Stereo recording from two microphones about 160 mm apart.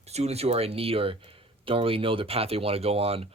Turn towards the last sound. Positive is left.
turn(degrees=-40)  # may be behind; listen again after turning